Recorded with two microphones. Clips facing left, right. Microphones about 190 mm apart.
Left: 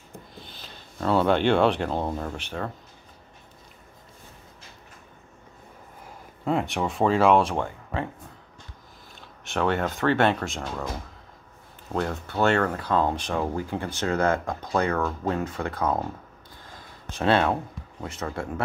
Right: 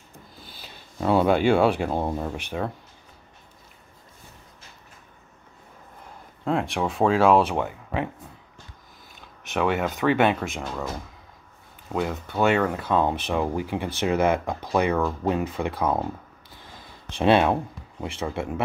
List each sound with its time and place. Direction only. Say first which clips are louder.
0.4 s speech: left 1 dB; 5° right (ahead or behind)
6.4 s speech: right 1 dB; centre (ahead or behind)
9.5 s speech: right 1 dB; 10° right (ahead or behind)
11.9 s speech: right 1 dB; 5° right (ahead or behind)
17.2 s speech: right 3 dB; 15° right (ahead or behind)